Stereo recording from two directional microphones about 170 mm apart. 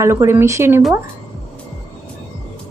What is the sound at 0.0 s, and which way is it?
Speech, 15° right (ahead or behind).